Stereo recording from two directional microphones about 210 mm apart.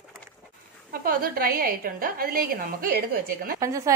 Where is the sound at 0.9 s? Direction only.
45° right (ahead or behind).